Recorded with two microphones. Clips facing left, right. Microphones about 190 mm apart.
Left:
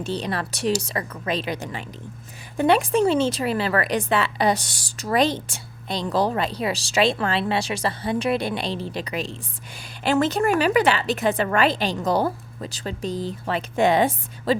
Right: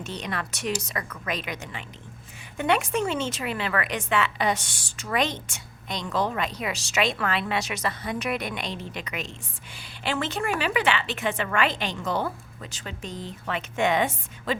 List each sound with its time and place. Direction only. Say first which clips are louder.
0.0 s speech: left 6 dB; 30° left (ahead or behind)